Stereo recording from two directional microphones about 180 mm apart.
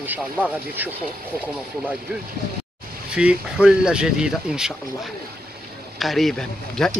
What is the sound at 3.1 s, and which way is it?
Speech, 5° right (ahead or behind).